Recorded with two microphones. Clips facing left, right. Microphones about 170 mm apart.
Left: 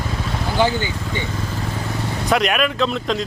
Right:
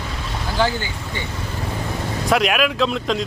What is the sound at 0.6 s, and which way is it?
Speech, 15° left (ahead or behind).